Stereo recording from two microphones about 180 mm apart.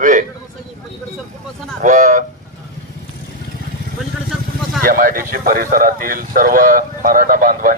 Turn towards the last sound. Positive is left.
turn(degrees=-50)  # may be behind; listen again after turning